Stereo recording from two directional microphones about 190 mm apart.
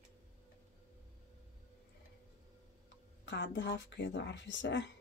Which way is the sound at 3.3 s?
70° left (ahead or behind).